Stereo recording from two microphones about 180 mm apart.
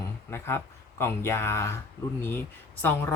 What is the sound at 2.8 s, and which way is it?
Speech, 10° left (ahead or behind).